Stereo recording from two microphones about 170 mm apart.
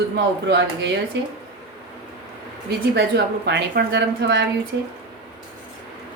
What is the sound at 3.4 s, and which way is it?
Speech, 85° right.